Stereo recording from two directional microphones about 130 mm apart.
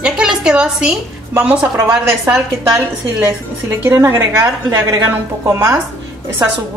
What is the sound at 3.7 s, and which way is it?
A woman's voice, 20° right (ahead or behind).